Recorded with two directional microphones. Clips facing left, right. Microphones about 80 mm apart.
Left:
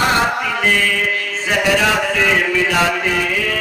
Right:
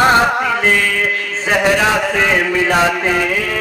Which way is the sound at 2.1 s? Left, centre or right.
Right.